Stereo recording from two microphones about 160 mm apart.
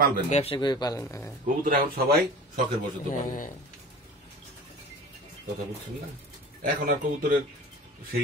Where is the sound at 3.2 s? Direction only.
55° left (ahead or behind).